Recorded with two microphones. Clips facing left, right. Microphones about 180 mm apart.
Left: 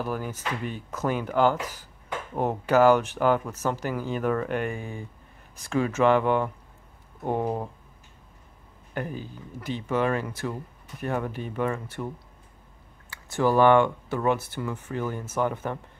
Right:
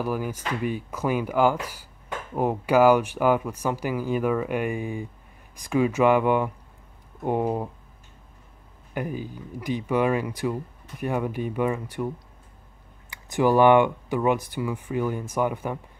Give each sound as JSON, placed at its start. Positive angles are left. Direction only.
{"t": 0.0, "sound": "speech", "side_deg": -10}
{"t": 8.9, "sound": "speech", "side_deg": -10}
{"t": 13.1, "sound": "speech", "side_deg": -15}